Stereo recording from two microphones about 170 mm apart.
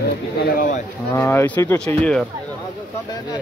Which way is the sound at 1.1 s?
15° left (ahead or behind).